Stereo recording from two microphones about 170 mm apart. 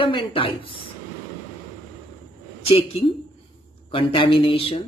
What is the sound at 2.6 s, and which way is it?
A woman's voice, 35° left (ahead or behind).